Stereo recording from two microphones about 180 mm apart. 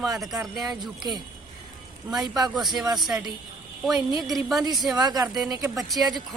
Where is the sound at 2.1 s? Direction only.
Centre (ahead or behind).